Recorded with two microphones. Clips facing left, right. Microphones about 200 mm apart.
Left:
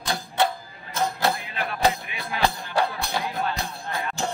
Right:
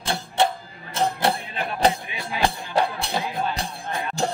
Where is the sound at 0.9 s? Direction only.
30° right (ahead or behind).